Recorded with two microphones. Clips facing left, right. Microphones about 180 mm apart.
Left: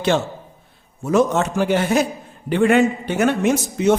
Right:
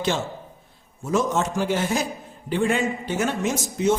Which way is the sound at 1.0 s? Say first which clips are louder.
Left 5 dB; 65° left (ahead or behind).